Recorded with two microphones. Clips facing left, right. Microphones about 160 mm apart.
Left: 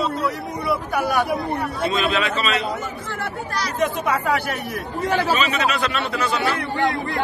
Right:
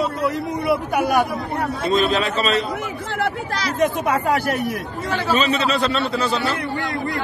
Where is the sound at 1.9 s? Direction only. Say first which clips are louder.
Right 5 dB; 35° right (ahead or behind).